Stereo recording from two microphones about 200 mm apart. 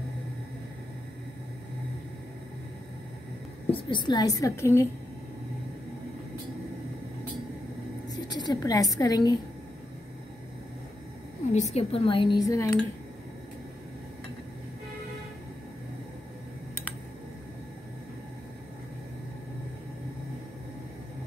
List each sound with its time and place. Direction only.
3.7 s a woman's voice: 25° left (ahead or behind)
8.1 s a woman's voice: 20° left (ahead or behind)
11.5 s speech: 35° left (ahead or behind); by 12.8 s 15° left (ahead or behind)